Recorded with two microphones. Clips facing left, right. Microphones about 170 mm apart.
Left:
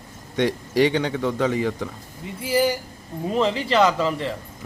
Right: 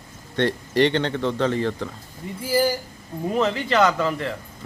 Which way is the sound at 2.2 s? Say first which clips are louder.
Right 2 dB; 90° left.